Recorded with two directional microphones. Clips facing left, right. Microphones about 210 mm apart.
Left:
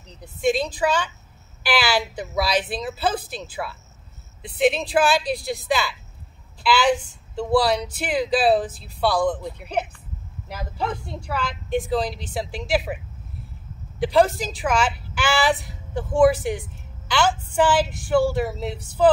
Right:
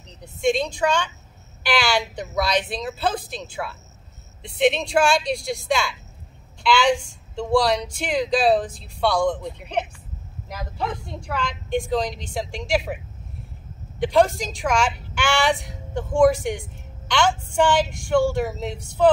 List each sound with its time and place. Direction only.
0.2 s a woman's voice: 5° left (ahead or behind)
11.1 s a woman's voice: 5° left (ahead or behind)